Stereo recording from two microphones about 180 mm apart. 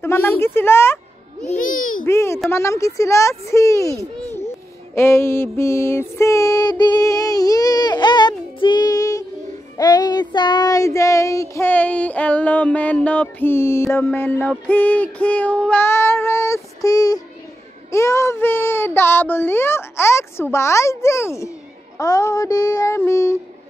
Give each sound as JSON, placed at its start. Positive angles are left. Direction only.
{"t": 0.0, "sound": "music", "side_deg": 15}
{"t": 1.6, "sound": "babbling", "side_deg": 50}
{"t": 2.0, "sound": "speech", "side_deg": 15}
{"t": 2.5, "sound": "music", "side_deg": 15}
{"t": 4.9, "sound": "a sound", "side_deg": 15}
{"t": 9.8, "sound": "child singing", "side_deg": 20}
{"t": 11.5, "sound": "music", "side_deg": 10}